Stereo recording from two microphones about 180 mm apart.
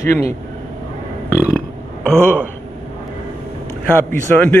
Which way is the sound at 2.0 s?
10° left (ahead or behind).